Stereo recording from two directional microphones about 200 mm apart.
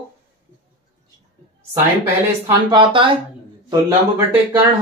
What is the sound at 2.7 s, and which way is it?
Speech, 25° right (ahead or behind).